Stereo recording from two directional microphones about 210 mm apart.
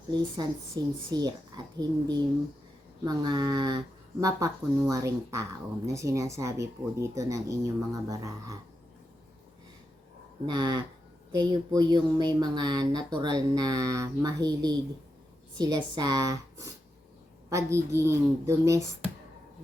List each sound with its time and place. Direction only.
0.1 s speech: 20° right (ahead or behind)
10.4 s speech: 20° right (ahead or behind)